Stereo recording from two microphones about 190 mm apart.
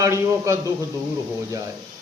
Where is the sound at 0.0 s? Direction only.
15° right (ahead or behind).